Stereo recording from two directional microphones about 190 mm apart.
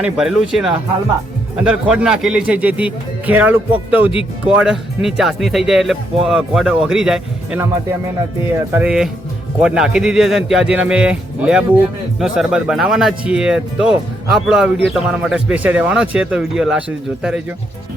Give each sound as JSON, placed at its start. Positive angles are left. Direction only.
{"t": 0.0, "sound": "speech", "side_deg": 0}
{"t": 8.7, "sound": "speech", "side_deg": -5}